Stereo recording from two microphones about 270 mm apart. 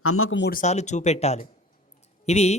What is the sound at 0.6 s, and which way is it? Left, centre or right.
Speech, left.